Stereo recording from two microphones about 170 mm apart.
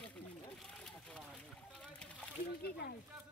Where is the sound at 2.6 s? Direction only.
70° left (ahead or behind).